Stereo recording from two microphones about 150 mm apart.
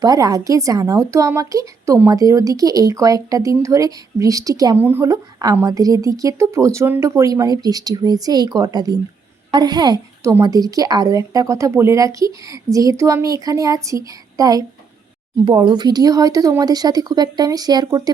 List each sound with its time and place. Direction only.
0.0 s a woman's voice: 25° right (ahead or behind)